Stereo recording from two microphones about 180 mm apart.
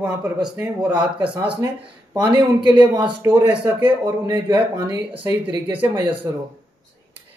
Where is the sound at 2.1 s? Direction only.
25° right (ahead or behind).